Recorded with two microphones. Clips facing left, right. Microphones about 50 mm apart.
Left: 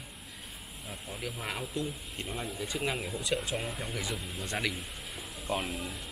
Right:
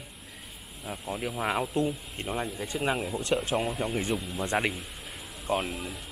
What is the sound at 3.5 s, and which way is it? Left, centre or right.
Speech, centre.